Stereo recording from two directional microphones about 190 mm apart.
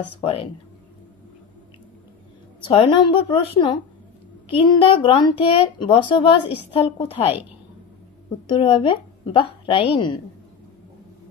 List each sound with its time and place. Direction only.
0.2 s a woman's voice: 30° left (ahead or behind)
2.6 s a woman's voice: 30° left (ahead or behind)
8.5 s a woman's voice: 30° left (ahead or behind)